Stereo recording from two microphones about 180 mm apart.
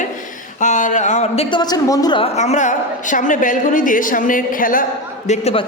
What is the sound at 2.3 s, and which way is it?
A woman's voice, 40° left (ahead or behind).